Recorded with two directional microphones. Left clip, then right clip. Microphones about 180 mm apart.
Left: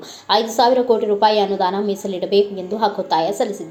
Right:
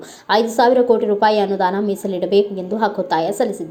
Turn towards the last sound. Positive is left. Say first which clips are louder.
# even
turn(degrees=-30)  # may be behind; listen again after turning